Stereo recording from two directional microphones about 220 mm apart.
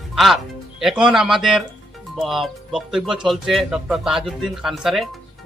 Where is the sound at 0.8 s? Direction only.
Centre (ahead or behind).